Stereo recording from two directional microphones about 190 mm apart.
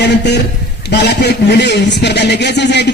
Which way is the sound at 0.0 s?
65° left (ahead or behind).